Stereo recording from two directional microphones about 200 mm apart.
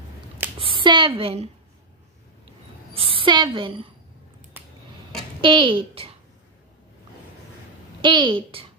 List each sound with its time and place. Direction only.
0.6 s a woman's voice: 25° right (ahead or behind)
2.9 s a woman's voice: 25° right (ahead or behind)
5.4 s a child's voice: 25° right (ahead or behind)
8.0 s a child's voice: 25° right (ahead or behind)